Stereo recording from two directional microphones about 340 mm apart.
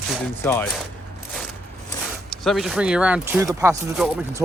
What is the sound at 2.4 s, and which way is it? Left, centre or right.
Speech, centre.